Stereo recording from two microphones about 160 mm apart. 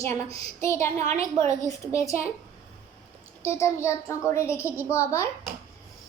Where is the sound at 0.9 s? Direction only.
45° right (ahead or behind).